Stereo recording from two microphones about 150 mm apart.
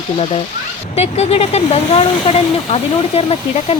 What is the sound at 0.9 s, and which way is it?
Speech, 45° left (ahead or behind).